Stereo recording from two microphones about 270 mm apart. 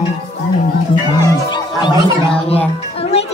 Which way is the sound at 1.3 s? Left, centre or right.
Centre.